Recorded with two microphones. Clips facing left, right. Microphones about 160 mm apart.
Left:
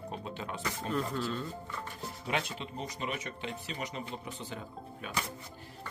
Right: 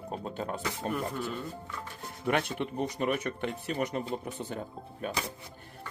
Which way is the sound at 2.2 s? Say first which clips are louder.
Right 6 dB; 55° right (ahead or behind).